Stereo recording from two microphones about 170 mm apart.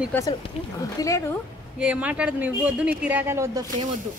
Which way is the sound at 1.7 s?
5° right (ahead or behind).